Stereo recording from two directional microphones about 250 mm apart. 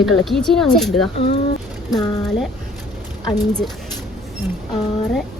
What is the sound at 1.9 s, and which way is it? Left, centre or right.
Speech, centre.